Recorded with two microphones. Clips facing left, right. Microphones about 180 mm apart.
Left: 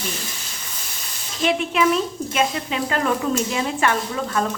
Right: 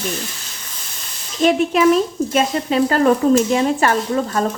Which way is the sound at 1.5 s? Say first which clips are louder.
Right 6 dB; 40° right (ahead or behind).